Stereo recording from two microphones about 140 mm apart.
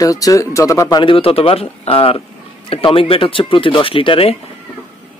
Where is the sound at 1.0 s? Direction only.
40° left (ahead or behind).